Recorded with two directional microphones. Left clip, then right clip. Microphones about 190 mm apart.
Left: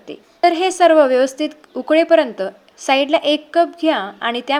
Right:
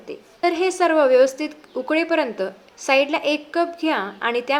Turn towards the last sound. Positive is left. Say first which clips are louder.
# left 1 dB
turn(degrees=35)  # may be behind; listen again after turning